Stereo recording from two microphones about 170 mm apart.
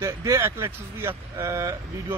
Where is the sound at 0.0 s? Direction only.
15° right (ahead or behind).